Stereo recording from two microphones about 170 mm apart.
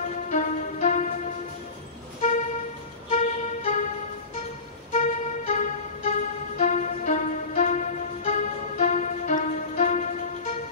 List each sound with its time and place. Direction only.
0.3 s music: 45° left (ahead or behind)
3.1 s music: 45° left (ahead or behind)
4.9 s music: 45° left (ahead or behind)